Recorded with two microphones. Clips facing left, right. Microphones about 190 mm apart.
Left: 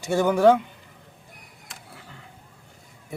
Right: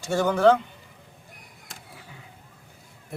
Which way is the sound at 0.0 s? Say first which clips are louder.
Left 2 dB; 15° left (ahead or behind).